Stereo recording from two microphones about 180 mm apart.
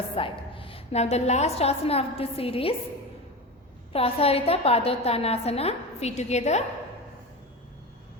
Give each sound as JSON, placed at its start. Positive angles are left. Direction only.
{"t": 0.2, "sound": "a woman's voice", "side_deg": 30}
{"t": 3.9, "sound": "a woman's voice", "side_deg": 35}